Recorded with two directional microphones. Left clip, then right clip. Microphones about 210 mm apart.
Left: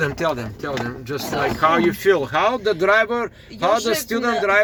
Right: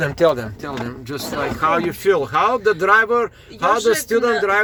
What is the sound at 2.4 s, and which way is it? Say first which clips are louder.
A man's voice: right 2 dB; 30° right (ahead or behind).